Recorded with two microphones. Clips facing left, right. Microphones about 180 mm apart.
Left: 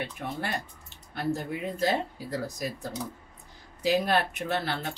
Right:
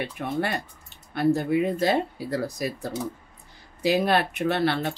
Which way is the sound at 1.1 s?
70° right (ahead or behind).